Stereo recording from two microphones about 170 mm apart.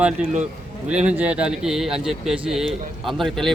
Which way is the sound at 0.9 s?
5° right (ahead or behind).